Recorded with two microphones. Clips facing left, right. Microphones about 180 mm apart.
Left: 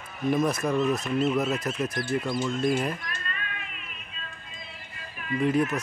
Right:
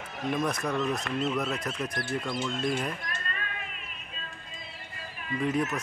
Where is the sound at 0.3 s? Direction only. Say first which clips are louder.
Left 5 dB; 5° left (ahead or behind).